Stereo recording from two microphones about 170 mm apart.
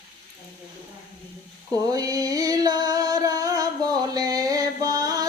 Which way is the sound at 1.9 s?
20° right (ahead or behind).